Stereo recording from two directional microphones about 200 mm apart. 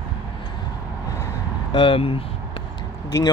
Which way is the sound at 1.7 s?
25° left (ahead or behind).